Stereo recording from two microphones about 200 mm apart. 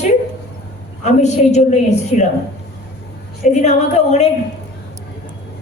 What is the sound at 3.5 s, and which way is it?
Speech, 35° left (ahead or behind).